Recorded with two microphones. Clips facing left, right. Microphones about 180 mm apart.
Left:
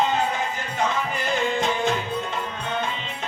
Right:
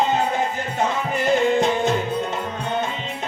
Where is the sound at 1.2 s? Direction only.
50° right (ahead or behind).